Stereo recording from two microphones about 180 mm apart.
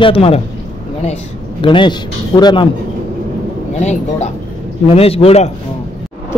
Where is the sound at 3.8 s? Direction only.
40° left (ahead or behind).